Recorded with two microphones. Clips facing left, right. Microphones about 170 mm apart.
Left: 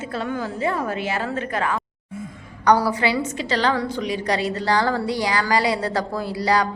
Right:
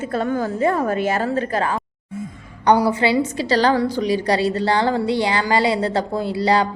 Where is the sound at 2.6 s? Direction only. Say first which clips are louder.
Right 2 dB; 25° right (ahead or behind).